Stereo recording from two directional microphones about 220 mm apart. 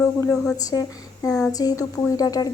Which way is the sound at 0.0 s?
10° left (ahead or behind).